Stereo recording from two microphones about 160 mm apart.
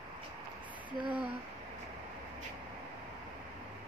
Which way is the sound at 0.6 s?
10° right (ahead or behind).